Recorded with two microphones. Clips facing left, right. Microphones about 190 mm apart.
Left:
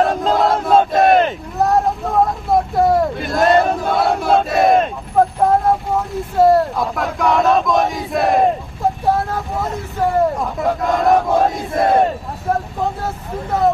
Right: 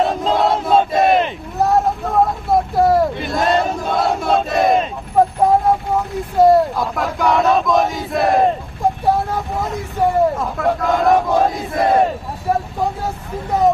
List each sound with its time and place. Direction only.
0.0 s battle cry: centre (ahead or behind)
13.0 s vehicle: 15° right (ahead or behind)